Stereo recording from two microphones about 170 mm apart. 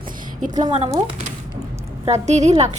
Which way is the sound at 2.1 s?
40° right (ahead or behind).